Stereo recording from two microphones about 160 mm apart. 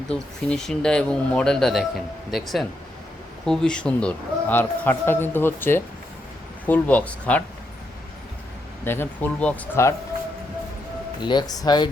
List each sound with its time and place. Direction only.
0.1 s a man's voice: 5° left (ahead or behind)
8.8 s a man's voice: 15° left (ahead or behind)
11.2 s speech: 30° left (ahead or behind)